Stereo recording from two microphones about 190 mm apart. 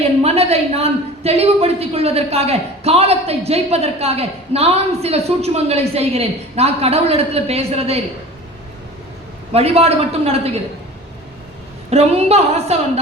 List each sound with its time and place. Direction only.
0.2 s a woman's voice: 35° right (ahead or behind)
9.5 s a woman's voice: 30° right (ahead or behind)
11.9 s a woman's voice: 35° right (ahead or behind)